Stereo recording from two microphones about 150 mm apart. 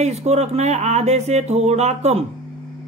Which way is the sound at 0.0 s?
45° right (ahead or behind).